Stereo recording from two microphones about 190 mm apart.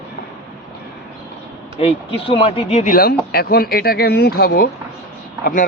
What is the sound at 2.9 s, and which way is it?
Speech, 55° left (ahead or behind).